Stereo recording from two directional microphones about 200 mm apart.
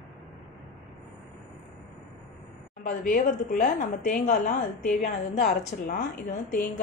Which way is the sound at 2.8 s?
40° left (ahead or behind).